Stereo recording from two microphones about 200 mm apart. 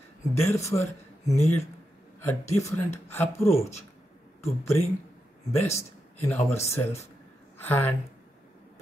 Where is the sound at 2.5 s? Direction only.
15° left (ahead or behind).